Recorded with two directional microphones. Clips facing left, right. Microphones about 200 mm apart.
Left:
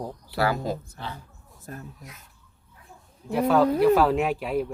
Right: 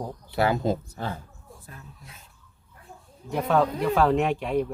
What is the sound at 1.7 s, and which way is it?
Speech, 45° left (ahead or behind).